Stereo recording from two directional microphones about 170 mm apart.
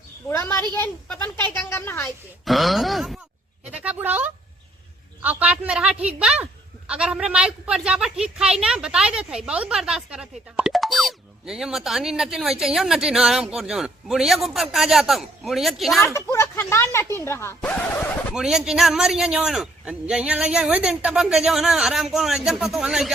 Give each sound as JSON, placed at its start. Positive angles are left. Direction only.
{"t": 0.3, "sound": "speech", "side_deg": 15}
{"t": 2.4, "sound": "speech", "side_deg": 0}
{"t": 16.1, "sound": "speech", "side_deg": 15}
{"t": 18.3, "sound": "speech", "side_deg": -5}